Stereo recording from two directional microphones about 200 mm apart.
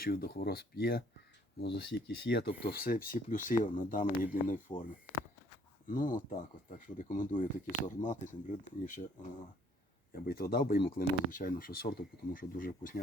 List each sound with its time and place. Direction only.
0.0 s speech: 50° left (ahead or behind)
1.6 s speech: 60° left (ahead or behind); by 4.6 s 40° left (ahead or behind)
5.9 s speech: 40° left (ahead or behind)